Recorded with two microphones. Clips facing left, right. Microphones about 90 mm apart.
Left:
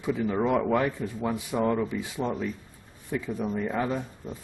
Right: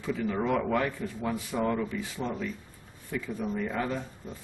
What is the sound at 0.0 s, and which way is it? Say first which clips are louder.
A man's voice: left 3 dB; 15° left (ahead or behind).